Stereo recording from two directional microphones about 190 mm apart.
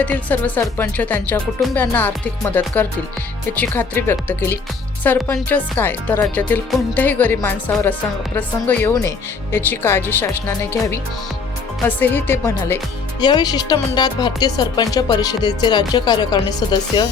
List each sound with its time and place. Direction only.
0.0 s speech: 10° left (ahead or behind)